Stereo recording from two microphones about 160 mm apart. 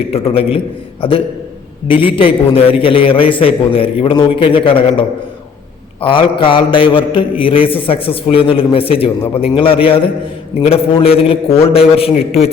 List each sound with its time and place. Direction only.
0.1 s a man's voice: 35° left (ahead or behind)